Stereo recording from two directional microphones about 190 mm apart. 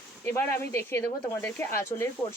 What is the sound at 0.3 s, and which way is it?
Speech, 15° left (ahead or behind).